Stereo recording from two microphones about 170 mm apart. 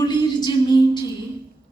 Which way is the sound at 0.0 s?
25° left (ahead or behind).